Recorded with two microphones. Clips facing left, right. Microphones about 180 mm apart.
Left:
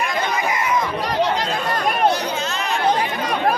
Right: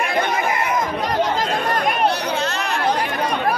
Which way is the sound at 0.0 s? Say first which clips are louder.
Right 2 dB; 60° right (ahead or behind).